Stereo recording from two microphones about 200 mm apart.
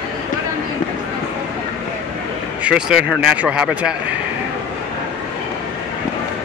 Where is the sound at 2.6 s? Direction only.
5° right (ahead or behind).